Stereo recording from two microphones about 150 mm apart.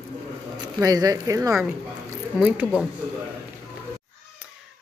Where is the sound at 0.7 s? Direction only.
25° right (ahead or behind).